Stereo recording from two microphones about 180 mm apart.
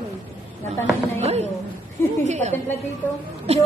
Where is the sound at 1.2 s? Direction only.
35° right (ahead or behind).